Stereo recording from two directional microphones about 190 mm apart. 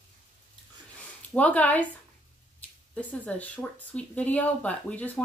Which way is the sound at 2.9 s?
5° left (ahead or behind).